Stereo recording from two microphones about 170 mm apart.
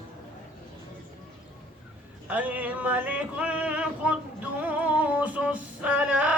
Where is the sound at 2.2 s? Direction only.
10° right (ahead or behind).